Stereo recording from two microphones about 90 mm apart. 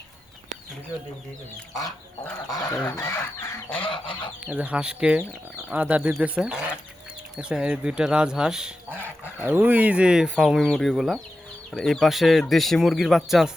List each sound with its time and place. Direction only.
2.5 s speech: 40° left (ahead or behind)
3.8 s goose: 65° left (ahead or behind)
4.4 s speech: 15° right (ahead or behind)
9.0 s speech: 20° right (ahead or behind); by 13.5 s 5° right (ahead or behind)